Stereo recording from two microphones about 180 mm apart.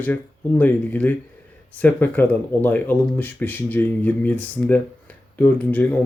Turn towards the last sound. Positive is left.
turn(degrees=10)  # may be behind; listen again after turning